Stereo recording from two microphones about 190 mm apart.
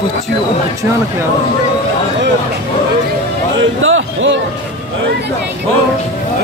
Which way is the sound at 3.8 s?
90° right.